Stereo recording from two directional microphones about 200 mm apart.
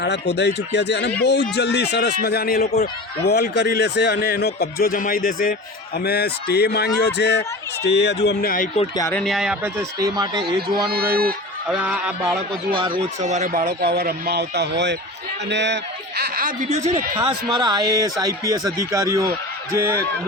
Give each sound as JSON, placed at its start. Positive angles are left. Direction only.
{"t": 0.0, "sound": "speech", "side_deg": 60}
{"t": 9.1, "sound": "a man's voice", "side_deg": 0}
{"t": 9.7, "sound": "a man's voice", "side_deg": -20}
{"t": 10.8, "sound": "speech", "side_deg": -50}
{"t": 11.7, "sound": "a man's voice", "side_deg": -5}
{"t": 12.7, "sound": "a man's voice", "side_deg": -25}
{"t": 13.2, "sound": "a man's voice", "side_deg": -35}